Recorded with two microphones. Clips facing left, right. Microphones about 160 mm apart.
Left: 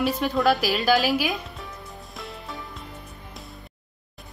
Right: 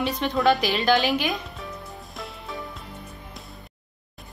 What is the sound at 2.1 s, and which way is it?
Music, centre (ahead or behind).